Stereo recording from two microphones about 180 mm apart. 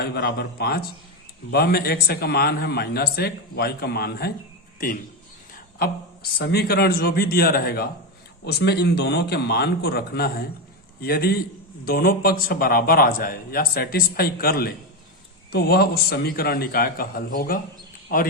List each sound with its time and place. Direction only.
0.0 s speech: 60° left (ahead or behind)
6.4 s speech: 60° left (ahead or behind)